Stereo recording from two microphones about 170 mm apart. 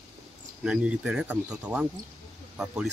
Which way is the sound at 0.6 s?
5° right (ahead or behind).